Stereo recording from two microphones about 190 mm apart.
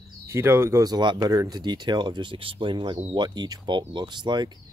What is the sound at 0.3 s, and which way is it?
Speech, 10° right (ahead or behind).